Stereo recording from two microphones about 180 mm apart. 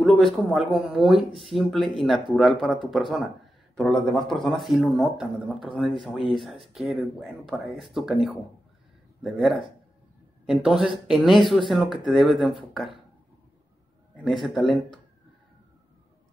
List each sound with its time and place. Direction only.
0.0 s speech: centre (ahead or behind)
14.1 s speech: centre (ahead or behind)